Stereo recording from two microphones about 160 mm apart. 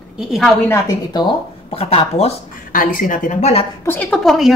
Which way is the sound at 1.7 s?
40° left (ahead or behind).